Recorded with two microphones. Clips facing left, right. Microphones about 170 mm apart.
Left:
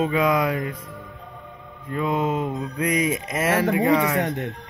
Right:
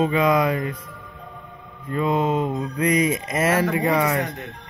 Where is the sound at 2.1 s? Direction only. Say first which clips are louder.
Right 2 dB; 30° right (ahead or behind).